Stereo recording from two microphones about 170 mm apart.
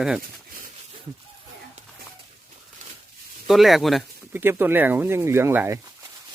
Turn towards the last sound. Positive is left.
turn(degrees=-15)  # may be behind; listen again after turning